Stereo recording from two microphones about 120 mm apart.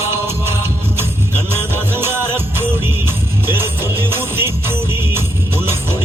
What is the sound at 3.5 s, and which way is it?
Music, 20° right (ahead or behind).